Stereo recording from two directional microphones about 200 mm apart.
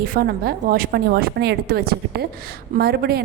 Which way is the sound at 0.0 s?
45° right (ahead or behind).